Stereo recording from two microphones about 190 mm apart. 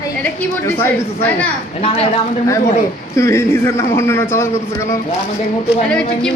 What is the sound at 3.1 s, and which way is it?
A man's voice, 15° left (ahead or behind).